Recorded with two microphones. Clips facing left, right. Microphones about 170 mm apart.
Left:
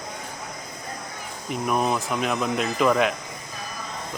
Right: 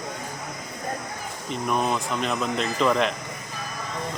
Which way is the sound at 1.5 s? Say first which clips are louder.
Left 1 dB; 5° left (ahead or behind).